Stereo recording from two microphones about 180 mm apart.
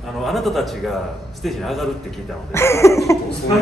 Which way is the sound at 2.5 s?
15° left (ahead or behind).